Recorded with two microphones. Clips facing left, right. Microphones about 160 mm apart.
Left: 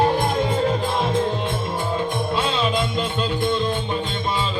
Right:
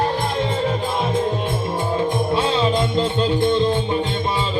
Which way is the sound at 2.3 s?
20° right (ahead or behind).